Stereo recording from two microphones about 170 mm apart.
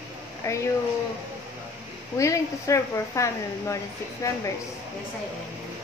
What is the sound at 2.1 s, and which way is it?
A woman's voice, 20° left (ahead or behind).